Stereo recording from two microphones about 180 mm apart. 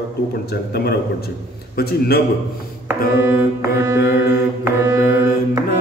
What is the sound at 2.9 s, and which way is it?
Music, 15° right (ahead or behind).